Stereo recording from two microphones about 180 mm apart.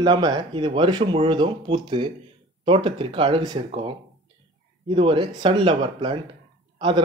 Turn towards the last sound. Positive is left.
turn(degrees=-25)  # may be behind; listen again after turning